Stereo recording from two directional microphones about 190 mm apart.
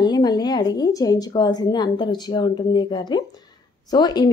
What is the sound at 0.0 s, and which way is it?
Speech, 20° left (ahead or behind).